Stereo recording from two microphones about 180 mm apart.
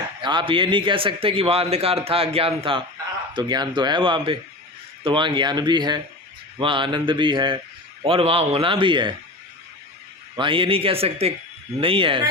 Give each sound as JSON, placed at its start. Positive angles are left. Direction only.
{"t": 0.2, "sound": "a man's voice", "side_deg": -25}
{"t": 10.3, "sound": "a man's voice", "side_deg": -30}